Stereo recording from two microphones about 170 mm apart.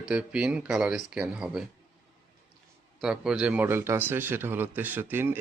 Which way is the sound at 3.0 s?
5° right (ahead or behind).